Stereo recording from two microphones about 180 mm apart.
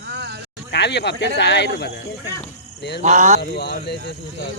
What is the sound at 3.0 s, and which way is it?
Speech, 40° right (ahead or behind).